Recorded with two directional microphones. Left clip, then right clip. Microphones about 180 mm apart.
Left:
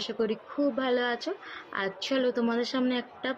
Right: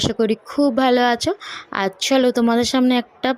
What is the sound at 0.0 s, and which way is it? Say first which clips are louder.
Speech: right 11 dB; 60° right (ahead or behind).